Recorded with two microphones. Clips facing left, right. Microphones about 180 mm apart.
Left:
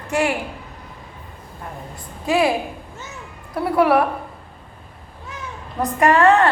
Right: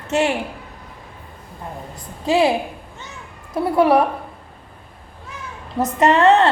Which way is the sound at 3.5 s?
20° right (ahead or behind).